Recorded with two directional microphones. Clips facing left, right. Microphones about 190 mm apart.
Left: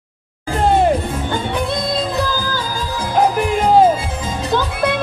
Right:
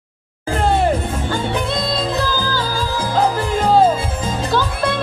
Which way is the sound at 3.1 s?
15° left (ahead or behind).